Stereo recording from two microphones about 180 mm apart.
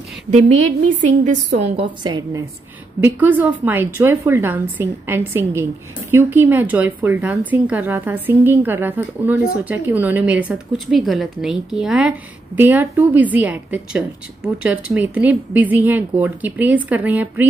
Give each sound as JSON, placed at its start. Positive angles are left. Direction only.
{"t": 0.3, "sound": "a woman's voice", "side_deg": -40}
{"t": 1.6, "sound": "a woman's voice", "side_deg": -25}
{"t": 3.0, "sound": "a woman's voice", "side_deg": -10}